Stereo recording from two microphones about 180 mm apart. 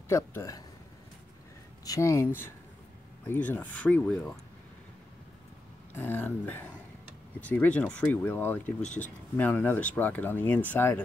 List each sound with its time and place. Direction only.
0.1 s speech: 15° left (ahead or behind)
1.9 s speech: 15° left (ahead or behind)
5.9 s speech: 10° left (ahead or behind)